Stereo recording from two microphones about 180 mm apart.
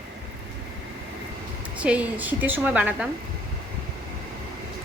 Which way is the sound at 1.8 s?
5° right (ahead or behind).